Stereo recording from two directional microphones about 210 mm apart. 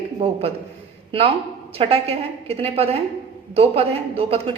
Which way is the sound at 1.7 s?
25° right (ahead or behind).